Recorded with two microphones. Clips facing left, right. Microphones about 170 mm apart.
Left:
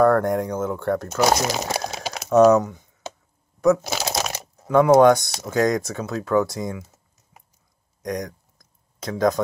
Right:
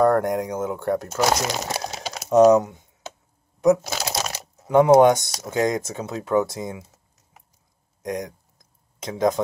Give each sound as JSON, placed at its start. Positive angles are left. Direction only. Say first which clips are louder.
{"t": 0.2, "sound": "speech", "louder": "left 1 dB", "side_deg": -20}
{"t": 1.2, "sound": "speech", "louder": "left 3 dB", "side_deg": 5}
{"t": 2.2, "sound": "speech", "louder": "even", "side_deg": -20}
{"t": 3.8, "sound": "shuffling cards", "louder": "left 2 dB", "side_deg": 5}
{"t": 4.6, "sound": "speech", "louder": "even", "side_deg": -20}
{"t": 8.0, "sound": "a sound", "louder": "left 1 dB", "side_deg": -20}